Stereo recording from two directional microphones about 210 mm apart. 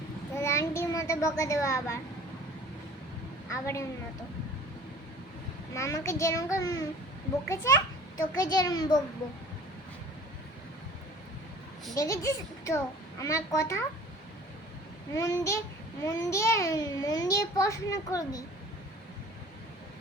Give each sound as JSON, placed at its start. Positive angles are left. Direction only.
{"t": 0.4, "sound": "child singing", "side_deg": 15}
{"t": 3.5, "sound": "a child's voice", "side_deg": 15}
{"t": 5.7, "sound": "a child's voice", "side_deg": 15}
{"t": 11.9, "sound": "a child's voice", "side_deg": 15}
{"t": 15.1, "sound": "a child's voice", "side_deg": 15}